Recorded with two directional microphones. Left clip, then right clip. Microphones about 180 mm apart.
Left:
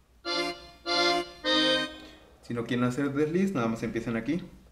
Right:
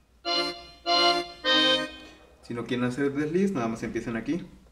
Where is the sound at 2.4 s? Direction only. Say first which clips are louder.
Even; 30° left (ahead or behind).